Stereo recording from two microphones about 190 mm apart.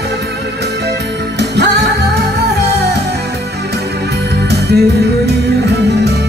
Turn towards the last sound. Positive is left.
turn(degrees=-60)  # may be behind; listen again after turning